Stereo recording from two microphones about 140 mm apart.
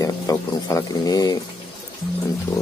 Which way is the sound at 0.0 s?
25° left (ahead or behind).